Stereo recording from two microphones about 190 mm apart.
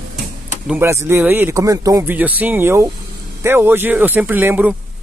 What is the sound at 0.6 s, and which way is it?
Speech, 10° right (ahead or behind).